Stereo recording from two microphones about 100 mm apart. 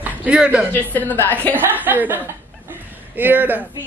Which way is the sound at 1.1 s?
20° left (ahead or behind).